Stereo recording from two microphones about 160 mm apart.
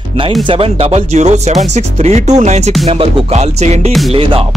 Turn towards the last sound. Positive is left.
turn(degrees=0)  # may be behind; listen again after turning